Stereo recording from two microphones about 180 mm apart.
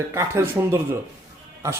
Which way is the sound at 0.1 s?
15° right (ahead or behind).